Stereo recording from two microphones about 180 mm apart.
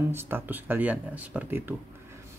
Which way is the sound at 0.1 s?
10° right (ahead or behind).